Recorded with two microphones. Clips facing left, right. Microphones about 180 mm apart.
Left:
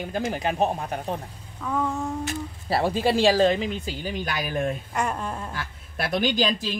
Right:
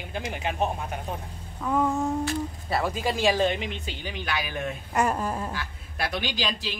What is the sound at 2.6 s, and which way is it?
Speech, 30° left (ahead or behind).